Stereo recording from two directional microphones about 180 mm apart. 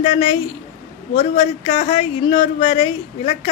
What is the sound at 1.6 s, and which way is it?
Speech, 30° left (ahead or behind).